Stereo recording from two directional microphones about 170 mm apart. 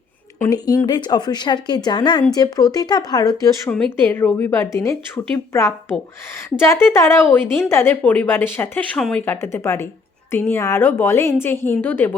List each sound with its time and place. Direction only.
0.3 s speech: 20° left (ahead or behind)
3.7 s a woman's voice: 10° left (ahead or behind)